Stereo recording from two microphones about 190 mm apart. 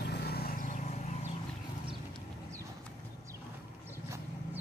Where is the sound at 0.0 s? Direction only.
60° left (ahead or behind); by 0.9 s 45° left (ahead or behind).